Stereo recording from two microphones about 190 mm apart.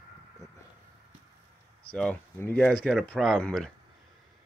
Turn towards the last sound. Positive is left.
turn(degrees=5)  # may be behind; listen again after turning